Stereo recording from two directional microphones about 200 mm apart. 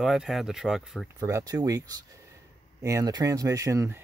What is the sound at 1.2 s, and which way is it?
Speech, 15° right (ahead or behind).